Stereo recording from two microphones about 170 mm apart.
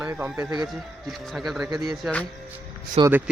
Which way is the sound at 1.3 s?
Centre (ahead or behind).